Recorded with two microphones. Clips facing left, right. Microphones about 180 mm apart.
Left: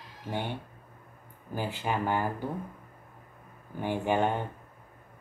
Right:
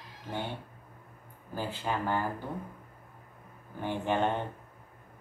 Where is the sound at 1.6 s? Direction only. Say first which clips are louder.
Left 2 dB; 15° left (ahead or behind).